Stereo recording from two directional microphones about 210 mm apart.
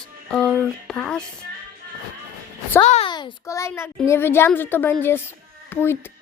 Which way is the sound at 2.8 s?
30° left (ahead or behind).